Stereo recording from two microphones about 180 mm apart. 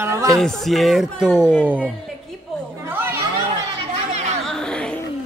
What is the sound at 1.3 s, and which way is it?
Speech, 10° left (ahead or behind).